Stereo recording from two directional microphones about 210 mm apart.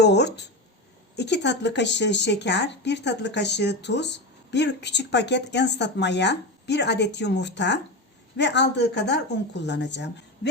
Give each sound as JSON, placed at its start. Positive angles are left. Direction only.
{"t": 0.0, "sound": "speech", "side_deg": 55}